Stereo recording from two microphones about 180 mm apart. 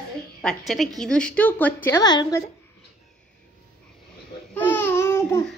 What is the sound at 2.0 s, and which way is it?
Speech, 25° left (ahead or behind).